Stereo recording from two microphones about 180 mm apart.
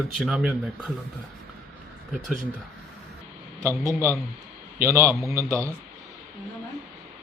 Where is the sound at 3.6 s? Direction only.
15° right (ahead or behind).